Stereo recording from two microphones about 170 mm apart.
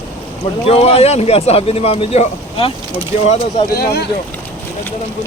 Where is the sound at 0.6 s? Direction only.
35° left (ahead or behind).